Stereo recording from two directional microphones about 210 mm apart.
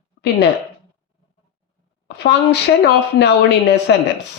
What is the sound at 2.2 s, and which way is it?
Speech, 55° left (ahead or behind).